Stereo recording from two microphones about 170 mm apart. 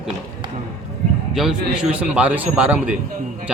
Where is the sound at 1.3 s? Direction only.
5° right (ahead or behind).